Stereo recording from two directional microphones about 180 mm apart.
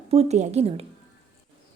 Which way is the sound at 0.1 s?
35° right (ahead or behind).